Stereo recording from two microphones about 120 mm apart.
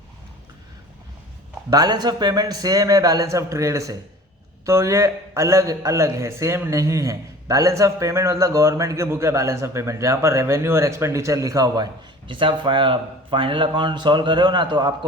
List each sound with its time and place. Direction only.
1.7 s a man's voice: 35° right (ahead or behind)
12.3 s a man's voice: 45° right (ahead or behind)